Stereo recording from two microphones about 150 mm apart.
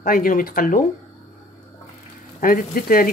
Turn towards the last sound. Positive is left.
turn(degrees=70)  # may be behind; listen again after turning